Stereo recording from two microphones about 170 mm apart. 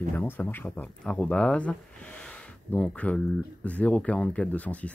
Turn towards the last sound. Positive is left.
turn(degrees=10)  # may be behind; listen again after turning